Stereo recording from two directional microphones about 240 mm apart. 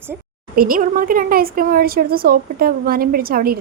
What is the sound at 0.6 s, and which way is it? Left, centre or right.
A woman's voice, right.